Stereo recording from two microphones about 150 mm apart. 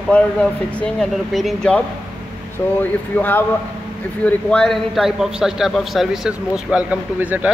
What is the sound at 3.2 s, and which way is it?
A man's voice, 15° left (ahead or behind).